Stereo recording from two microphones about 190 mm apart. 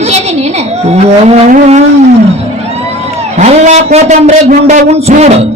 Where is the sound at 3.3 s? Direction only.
35° right (ahead or behind).